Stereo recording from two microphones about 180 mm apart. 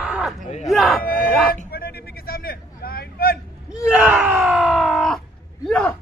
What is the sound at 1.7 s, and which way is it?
Vehicle, 60° left (ahead or behind).